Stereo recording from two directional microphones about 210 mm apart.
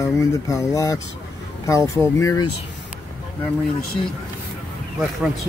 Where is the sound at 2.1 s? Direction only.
15° left (ahead or behind).